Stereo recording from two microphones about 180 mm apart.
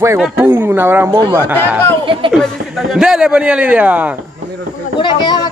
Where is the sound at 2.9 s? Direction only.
5° right (ahead or behind).